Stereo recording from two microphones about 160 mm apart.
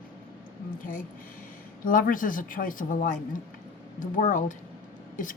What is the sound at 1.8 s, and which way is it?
Speech, 60° left (ahead or behind).